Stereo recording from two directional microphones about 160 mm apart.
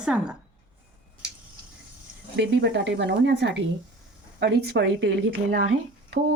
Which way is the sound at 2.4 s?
90° right.